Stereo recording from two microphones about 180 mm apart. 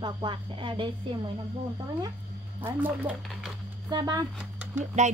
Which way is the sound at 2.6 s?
10° right (ahead or behind).